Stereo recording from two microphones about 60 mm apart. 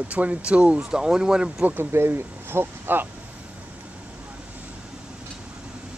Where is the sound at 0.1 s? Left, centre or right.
Right.